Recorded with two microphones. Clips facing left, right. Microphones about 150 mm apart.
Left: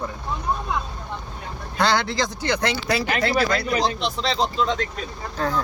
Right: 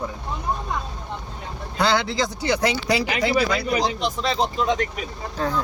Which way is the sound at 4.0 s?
50° right (ahead or behind).